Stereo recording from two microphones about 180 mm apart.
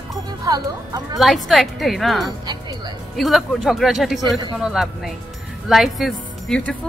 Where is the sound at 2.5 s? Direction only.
25° right (ahead or behind).